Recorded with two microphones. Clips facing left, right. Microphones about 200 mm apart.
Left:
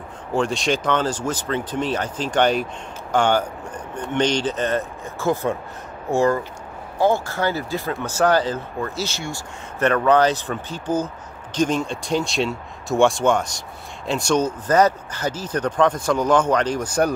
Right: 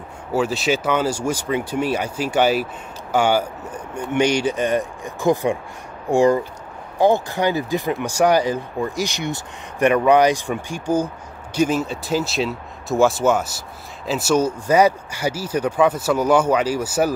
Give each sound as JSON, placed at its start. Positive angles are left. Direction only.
{"t": 0.3, "sound": "speech", "side_deg": -5}